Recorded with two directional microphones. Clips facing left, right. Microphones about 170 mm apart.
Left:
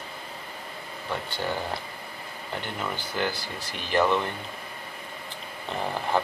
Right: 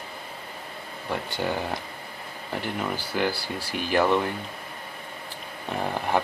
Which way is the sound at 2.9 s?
10° right (ahead or behind).